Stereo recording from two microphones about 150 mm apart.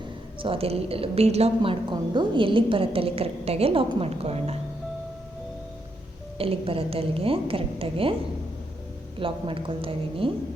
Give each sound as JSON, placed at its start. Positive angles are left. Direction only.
{"t": 0.4, "sound": "a woman's voice", "side_deg": -40}
{"t": 6.4, "sound": "a woman's voice", "side_deg": -40}
{"t": 9.1, "sound": "a woman's voice", "side_deg": -35}